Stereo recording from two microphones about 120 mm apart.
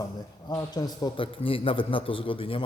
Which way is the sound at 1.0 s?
45° left (ahead or behind).